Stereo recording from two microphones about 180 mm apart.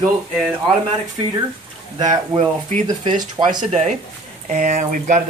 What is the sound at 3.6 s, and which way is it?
Speech, 40° right (ahead or behind).